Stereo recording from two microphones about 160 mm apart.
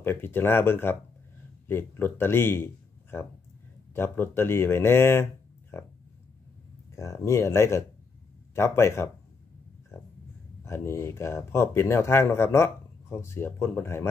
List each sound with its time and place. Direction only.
0.0 s speech: 15° left (ahead or behind)
7.0 s speech: 15° left (ahead or behind)
10.6 s speech: 15° left (ahead or behind)